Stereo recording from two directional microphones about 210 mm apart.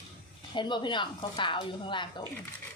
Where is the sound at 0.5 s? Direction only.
20° left (ahead or behind).